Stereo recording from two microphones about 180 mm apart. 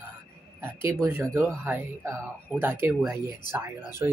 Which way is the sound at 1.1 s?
15° right (ahead or behind).